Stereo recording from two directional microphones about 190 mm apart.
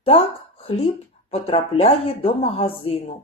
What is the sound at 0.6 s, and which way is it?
Speech, 30° left (ahead or behind).